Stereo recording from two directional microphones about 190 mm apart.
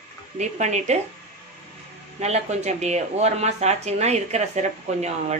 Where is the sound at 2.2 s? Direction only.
35° right (ahead or behind).